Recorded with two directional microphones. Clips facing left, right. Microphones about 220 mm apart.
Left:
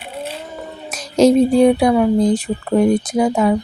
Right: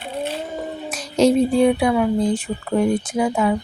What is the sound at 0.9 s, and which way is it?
Speech, 45° left (ahead or behind).